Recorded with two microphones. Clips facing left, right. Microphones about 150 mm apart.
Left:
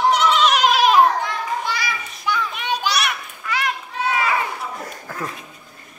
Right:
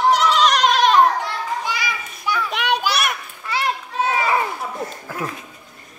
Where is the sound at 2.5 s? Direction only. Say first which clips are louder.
Right 4 dB; 75° right (ahead or behind).